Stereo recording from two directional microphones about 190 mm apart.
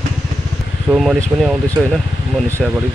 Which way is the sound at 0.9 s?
Centre (ahead or behind).